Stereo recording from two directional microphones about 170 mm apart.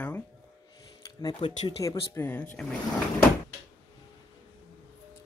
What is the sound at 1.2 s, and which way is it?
Speech, 30° left (ahead or behind).